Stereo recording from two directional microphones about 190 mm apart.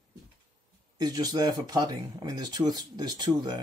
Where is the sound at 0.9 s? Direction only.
20° right (ahead or behind).